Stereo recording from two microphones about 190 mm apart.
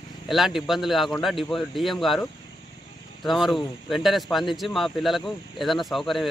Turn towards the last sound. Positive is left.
turn(degrees=0)  # may be behind; listen again after turning